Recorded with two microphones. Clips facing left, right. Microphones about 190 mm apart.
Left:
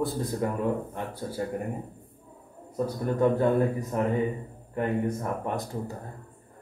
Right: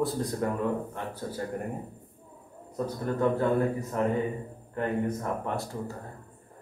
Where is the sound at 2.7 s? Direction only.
15° left (ahead or behind).